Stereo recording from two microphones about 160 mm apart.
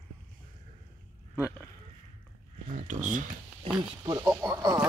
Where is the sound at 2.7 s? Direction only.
50° right (ahead or behind).